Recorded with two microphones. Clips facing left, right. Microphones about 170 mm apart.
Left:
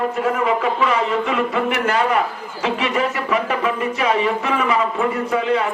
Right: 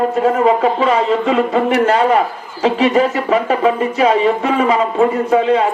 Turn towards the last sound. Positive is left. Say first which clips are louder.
# right 6 dB
turn(degrees=-30)  # may be behind; listen again after turning